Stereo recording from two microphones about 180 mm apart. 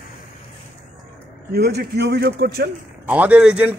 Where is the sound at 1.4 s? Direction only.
65° right (ahead or behind).